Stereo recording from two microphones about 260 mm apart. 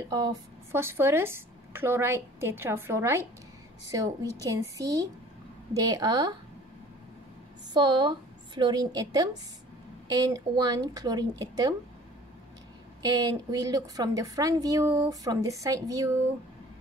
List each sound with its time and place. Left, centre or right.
0.1 s a woman's voice: centre
7.7 s a woman's voice: centre
13.0 s a woman's voice: centre